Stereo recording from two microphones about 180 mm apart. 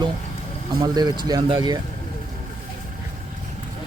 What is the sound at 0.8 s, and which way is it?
Speech, 25° right (ahead or behind).